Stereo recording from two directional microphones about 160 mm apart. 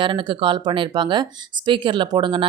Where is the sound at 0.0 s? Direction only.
30° right (ahead or behind).